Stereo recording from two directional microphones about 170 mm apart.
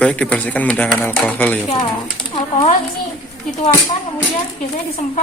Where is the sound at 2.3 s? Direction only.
40° left (ahead or behind).